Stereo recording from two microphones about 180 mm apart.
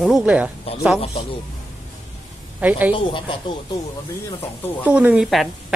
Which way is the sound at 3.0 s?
30° left (ahead or behind).